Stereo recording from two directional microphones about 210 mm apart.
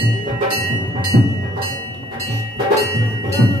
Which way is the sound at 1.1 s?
35° right (ahead or behind).